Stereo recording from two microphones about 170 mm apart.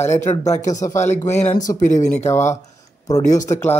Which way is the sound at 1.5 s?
20° left (ahead or behind).